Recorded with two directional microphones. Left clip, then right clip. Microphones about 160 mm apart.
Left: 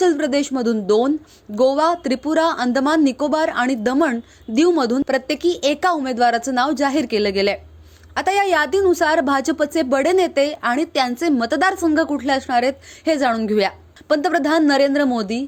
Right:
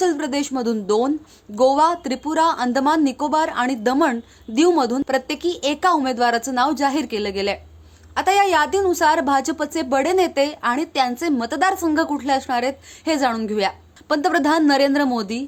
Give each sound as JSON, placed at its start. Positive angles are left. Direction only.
{"t": 0.0, "sound": "a woman's voice", "side_deg": 15}
{"t": 14.1, "sound": "a woman's voice", "side_deg": 15}